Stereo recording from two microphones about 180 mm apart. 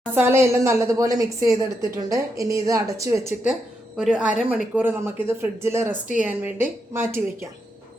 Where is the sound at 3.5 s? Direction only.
5° right (ahead or behind).